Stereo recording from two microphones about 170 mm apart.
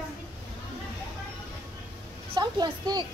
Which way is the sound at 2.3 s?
25° right (ahead or behind).